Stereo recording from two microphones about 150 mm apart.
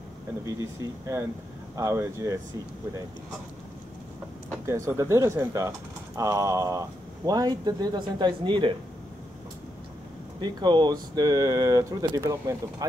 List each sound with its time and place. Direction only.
0.6 s speech: 20° right (ahead or behind)
4.6 s speech: 20° right (ahead or behind)
10.4 s speech: 30° right (ahead or behind)